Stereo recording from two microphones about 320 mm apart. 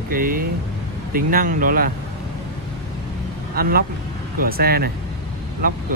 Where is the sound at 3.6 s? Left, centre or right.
Right.